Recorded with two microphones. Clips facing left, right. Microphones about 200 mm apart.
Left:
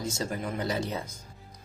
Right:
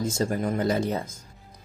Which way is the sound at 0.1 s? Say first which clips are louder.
Right 7 dB; 50° right (ahead or behind).